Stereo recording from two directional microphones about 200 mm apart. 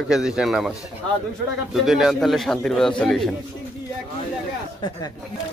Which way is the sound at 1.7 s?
Centre (ahead or behind).